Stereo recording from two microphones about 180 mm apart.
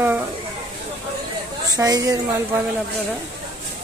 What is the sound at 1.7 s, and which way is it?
Speech, 20° right (ahead or behind).